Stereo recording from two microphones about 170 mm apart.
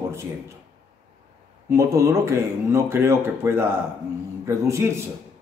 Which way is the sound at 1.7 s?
15° right (ahead or behind).